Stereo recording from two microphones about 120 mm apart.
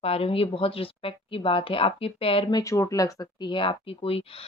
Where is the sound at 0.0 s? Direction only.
55° left (ahead or behind).